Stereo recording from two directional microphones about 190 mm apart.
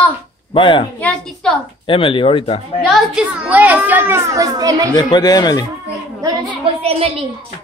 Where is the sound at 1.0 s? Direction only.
5° left (ahead or behind).